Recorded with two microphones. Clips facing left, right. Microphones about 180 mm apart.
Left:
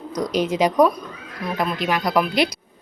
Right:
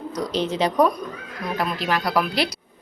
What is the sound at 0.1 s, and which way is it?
Speech, 10° left (ahead or behind).